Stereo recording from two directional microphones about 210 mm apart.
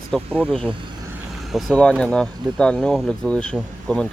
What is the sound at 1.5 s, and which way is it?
Speech, centre (ahead or behind).